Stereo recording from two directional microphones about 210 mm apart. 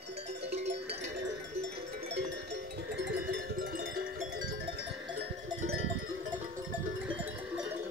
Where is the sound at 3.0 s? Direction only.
55° right (ahead or behind).